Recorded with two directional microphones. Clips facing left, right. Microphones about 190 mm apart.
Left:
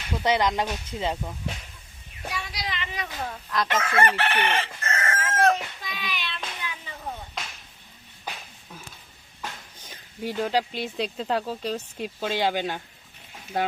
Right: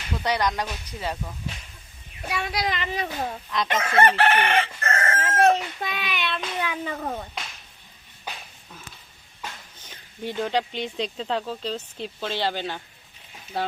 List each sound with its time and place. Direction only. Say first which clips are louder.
0.2 s speech: left 2 dB; 20° left (ahead or behind)
2.3 s speech: right 7 dB; 60° right (ahead or behind); by 3.3 s 30° right (ahead or behind)
3.7 s chicken: right 3 dB; 25° right (ahead or behind)
4.3 s chicken: right 4 dB; 55° right (ahead or behind)
5.1 s chicken: right 3 dB; 25° right (ahead or behind)
5.8 s a child's voice: right 5 dB; 65° right (ahead or behind)
9.9 s speech: left 1 dB; 5° left (ahead or behind)